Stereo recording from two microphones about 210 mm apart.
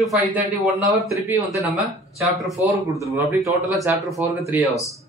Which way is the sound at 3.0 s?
15° right (ahead or behind).